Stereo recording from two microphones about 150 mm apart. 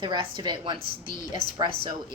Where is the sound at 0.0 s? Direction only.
35° right (ahead or behind).